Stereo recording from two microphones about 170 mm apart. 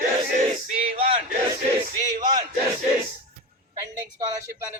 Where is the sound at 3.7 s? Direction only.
20° right (ahead or behind).